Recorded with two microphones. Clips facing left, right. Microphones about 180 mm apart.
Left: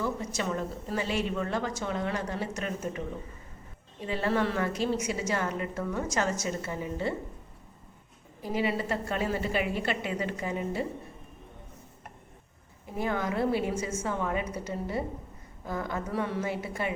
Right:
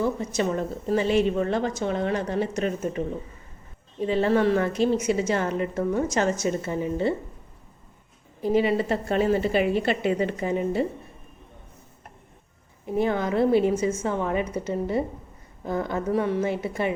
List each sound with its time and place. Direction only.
0.0 s a woman's voice: 20° right (ahead or behind)
4.0 s a woman's voice: 25° right (ahead or behind)
8.5 s a woman's voice: 25° right (ahead or behind)
13.0 s a woman's voice: 25° right (ahead or behind)